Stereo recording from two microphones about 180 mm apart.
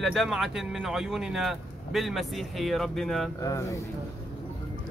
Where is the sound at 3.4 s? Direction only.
20° left (ahead or behind).